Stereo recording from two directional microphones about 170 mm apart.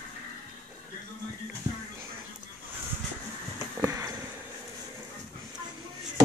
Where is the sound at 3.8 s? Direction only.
20° right (ahead or behind).